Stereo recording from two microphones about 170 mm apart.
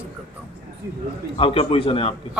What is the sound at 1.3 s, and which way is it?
Speech, 35° left (ahead or behind).